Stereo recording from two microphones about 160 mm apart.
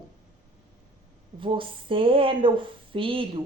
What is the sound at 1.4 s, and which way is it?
A woman's voice, 30° right (ahead or behind).